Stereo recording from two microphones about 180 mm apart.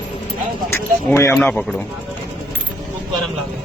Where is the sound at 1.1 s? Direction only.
15° left (ahead or behind).